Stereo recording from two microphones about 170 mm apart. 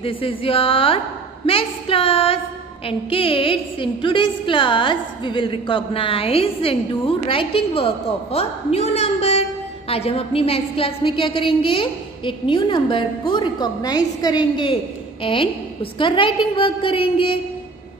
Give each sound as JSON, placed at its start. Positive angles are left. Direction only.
{"t": 0.0, "sound": "a woman's voice", "side_deg": 35}